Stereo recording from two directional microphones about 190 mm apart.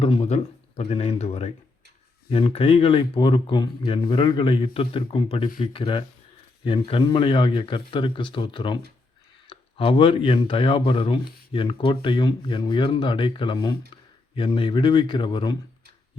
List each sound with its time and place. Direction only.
0.0 s speech: 30° left (ahead or behind)